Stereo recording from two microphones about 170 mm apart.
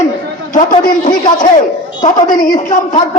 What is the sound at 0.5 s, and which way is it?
A man's voice, 55° left (ahead or behind).